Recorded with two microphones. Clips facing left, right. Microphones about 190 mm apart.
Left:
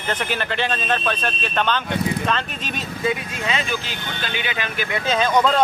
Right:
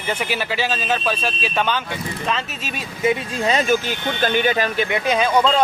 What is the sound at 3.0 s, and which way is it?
Speech, 30° right (ahead or behind).